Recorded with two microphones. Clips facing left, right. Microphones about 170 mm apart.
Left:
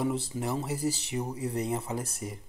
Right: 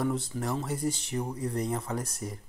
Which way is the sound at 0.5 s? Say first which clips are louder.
Even; 5° left (ahead or behind).